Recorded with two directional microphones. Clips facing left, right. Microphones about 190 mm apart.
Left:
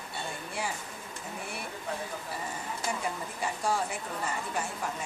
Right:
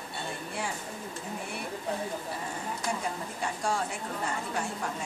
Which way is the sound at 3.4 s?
5° left (ahead or behind).